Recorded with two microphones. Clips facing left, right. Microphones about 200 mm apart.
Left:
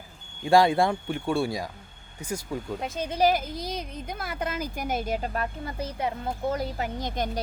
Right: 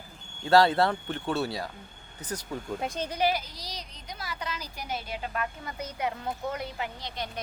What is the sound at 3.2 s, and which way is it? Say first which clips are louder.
A woman's voice: left 6 dB; 45° left (ahead or behind).